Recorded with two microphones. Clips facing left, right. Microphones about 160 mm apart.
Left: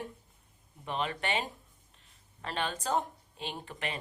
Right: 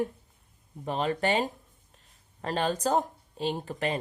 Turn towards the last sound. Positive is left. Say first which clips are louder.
# right 9 dB
turn(degrees=-40)  # may be behind; listen again after turning